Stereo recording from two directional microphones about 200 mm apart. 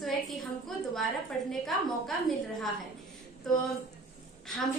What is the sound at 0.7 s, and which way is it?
Speech, centre (ahead or behind).